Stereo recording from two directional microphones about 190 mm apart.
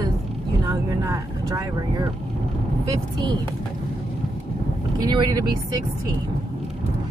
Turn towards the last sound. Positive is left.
turn(degrees=-20)  # may be behind; listen again after turning